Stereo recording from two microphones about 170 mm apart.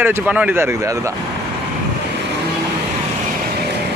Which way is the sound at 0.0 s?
10° right (ahead or behind).